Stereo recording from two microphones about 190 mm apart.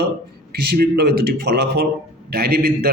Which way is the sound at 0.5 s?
55° right (ahead or behind).